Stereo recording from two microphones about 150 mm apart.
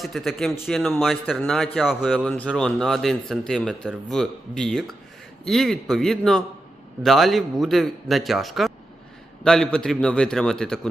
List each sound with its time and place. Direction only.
0.0 s speech: centre (ahead or behind)
2.1 s speech: 10° left (ahead or behind)